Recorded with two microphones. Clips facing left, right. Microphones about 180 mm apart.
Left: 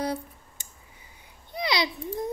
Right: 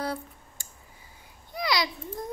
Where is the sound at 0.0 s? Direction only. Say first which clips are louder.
Left 2 dB; 20° left (ahead or behind).